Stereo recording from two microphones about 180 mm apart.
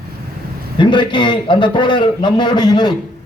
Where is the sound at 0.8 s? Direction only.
25° left (ahead or behind).